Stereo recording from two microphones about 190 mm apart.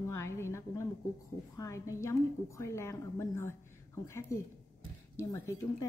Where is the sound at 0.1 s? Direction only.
15° left (ahead or behind).